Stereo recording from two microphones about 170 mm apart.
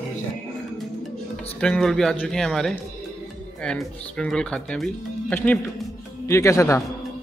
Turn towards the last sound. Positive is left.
turn(degrees=20)  # may be behind; listen again after turning